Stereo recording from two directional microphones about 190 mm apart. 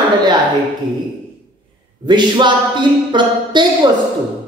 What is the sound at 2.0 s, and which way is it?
Speech, 25° right (ahead or behind).